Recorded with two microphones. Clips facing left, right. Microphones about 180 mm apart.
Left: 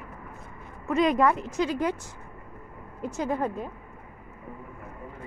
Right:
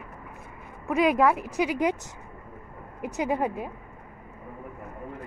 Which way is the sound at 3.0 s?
15° right (ahead or behind).